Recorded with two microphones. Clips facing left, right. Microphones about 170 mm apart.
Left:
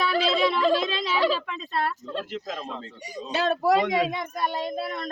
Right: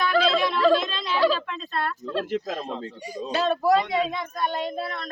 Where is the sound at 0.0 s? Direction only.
10° left (ahead or behind).